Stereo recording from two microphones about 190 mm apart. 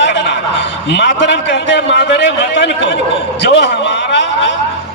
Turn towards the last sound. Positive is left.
turn(degrees=70)  # may be behind; listen again after turning